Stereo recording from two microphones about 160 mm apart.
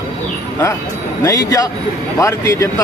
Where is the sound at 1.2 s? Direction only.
20° left (ahead or behind).